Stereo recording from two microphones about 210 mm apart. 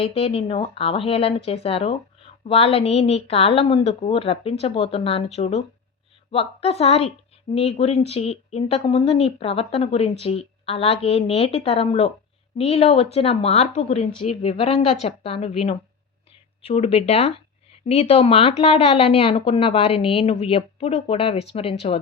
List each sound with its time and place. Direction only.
0.0 s speech: 25° left (ahead or behind)